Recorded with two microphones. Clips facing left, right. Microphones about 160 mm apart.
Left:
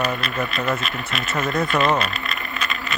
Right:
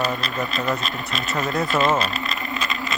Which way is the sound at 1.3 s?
Centre (ahead or behind).